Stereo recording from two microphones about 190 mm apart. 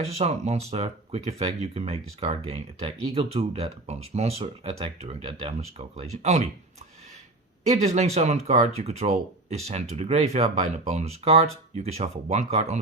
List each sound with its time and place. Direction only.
0.0 s speech: 30° right (ahead or behind)
7.6 s speech: 35° right (ahead or behind)